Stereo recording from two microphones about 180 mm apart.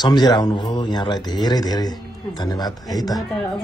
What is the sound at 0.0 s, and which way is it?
Speech, 25° left (ahead or behind).